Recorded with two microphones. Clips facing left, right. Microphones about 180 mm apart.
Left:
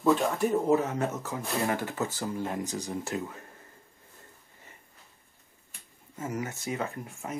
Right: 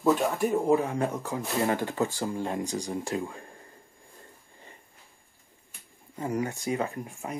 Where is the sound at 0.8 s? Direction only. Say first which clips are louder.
Right 2 dB; 15° right (ahead or behind).